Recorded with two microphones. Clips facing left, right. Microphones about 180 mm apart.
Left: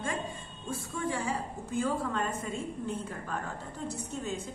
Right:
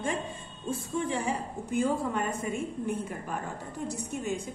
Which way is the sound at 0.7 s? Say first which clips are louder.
Right 3 dB; 20° right (ahead or behind).